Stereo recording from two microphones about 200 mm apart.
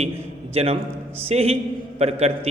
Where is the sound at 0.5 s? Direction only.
30° right (ahead or behind).